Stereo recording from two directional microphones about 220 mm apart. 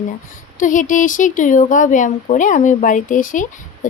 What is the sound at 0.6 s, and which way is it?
A woman's voice, 35° left (ahead or behind).